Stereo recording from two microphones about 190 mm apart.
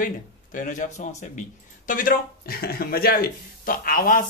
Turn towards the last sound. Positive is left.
turn(degrees=45)  # may be behind; listen again after turning